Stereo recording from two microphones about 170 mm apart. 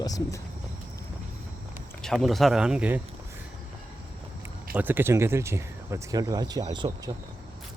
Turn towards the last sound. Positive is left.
turn(degrees=-25)  # may be behind; listen again after turning